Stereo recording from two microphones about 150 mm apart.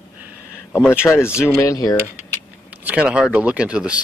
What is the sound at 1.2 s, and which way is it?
Speech, 15° left (ahead or behind).